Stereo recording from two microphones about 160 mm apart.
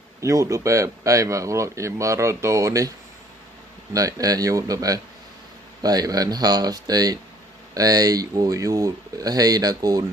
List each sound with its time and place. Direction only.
0.2 s speech: 20° right (ahead or behind)
3.9 s speech: 20° right (ahead or behind)